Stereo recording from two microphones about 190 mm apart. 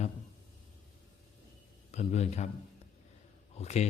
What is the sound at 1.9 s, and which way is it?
Speech, 35° left (ahead or behind).